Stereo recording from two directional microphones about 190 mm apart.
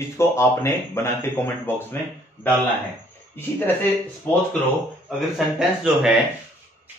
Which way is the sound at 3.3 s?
10° left (ahead or behind).